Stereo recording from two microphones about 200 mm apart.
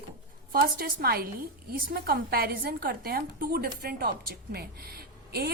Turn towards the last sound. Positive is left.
turn(degrees=-50)  # may be behind; listen again after turning